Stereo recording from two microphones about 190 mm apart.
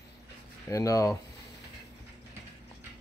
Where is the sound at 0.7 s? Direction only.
15° left (ahead or behind).